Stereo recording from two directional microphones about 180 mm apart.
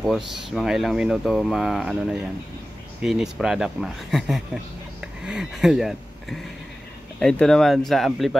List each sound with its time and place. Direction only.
0.0 s speech: centre (ahead or behind)